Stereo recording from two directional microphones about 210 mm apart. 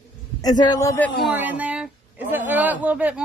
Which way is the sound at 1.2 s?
10° right (ahead or behind).